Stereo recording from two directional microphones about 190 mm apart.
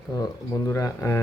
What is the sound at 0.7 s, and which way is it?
Speech, 15° left (ahead or behind).